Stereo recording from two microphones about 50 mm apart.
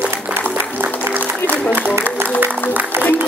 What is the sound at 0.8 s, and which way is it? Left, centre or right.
Music, right.